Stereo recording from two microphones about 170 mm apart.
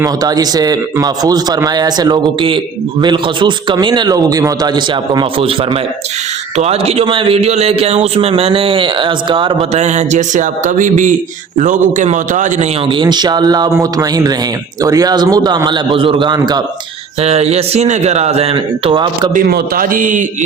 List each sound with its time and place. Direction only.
0.0 s a man's voice: 20° right (ahead or behind); by 12.6 s 50° right (ahead or behind)
12.9 s a man's voice: 25° right (ahead or behind)
17.2 s a man's voice: 40° right (ahead or behind)
19.3 s speech: 60° right (ahead or behind)